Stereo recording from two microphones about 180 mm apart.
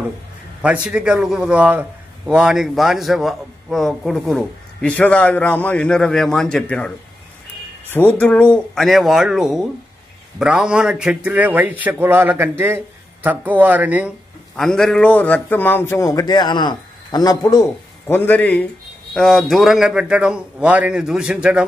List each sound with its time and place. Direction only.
0.8 s speech: 5° right (ahead or behind)
7.9 s speech: 10° left (ahead or behind); by 21.6 s 5° right (ahead or behind)